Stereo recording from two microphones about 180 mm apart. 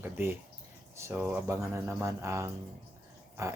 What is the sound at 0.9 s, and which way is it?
Speech, 15° right (ahead or behind).